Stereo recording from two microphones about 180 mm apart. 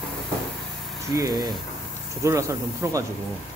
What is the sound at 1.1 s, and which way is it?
Speech, 20° right (ahead or behind).